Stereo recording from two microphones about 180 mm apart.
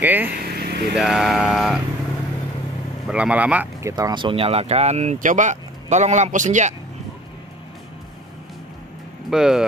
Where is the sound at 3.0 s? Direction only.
5° right (ahead or behind); by 6.7 s 40° right (ahead or behind).